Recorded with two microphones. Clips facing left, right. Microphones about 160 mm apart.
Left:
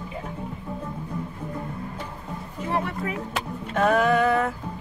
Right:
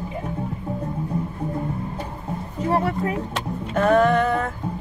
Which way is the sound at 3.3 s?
Centre (ahead or behind).